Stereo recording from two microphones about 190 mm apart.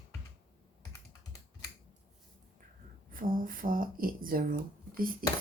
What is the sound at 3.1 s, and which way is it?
Speech, 45° right (ahead or behind).